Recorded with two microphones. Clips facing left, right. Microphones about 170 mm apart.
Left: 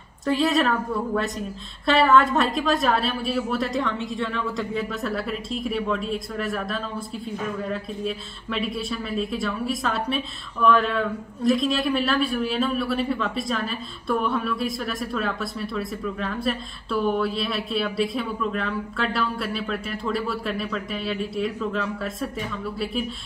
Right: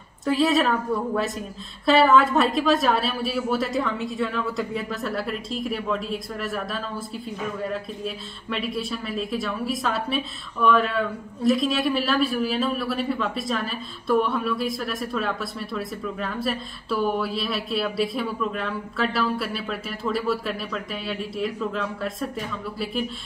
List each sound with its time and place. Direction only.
0.2 s speech: centre (ahead or behind)